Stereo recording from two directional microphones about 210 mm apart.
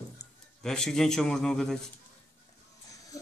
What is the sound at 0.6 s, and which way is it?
Speech, centre (ahead or behind).